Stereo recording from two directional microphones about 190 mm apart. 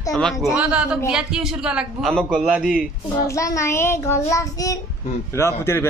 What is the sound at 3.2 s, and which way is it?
Child singing, 15° left (ahead or behind).